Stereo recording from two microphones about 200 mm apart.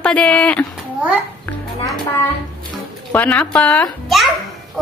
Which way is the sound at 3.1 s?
10° left (ahead or behind).